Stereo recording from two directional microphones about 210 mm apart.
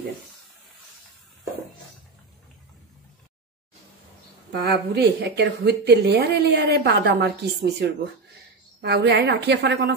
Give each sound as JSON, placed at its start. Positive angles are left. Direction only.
{"t": 4.5, "sound": "speech", "side_deg": -50}